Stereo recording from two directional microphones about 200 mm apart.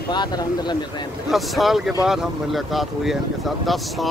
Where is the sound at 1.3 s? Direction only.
Centre (ahead or behind).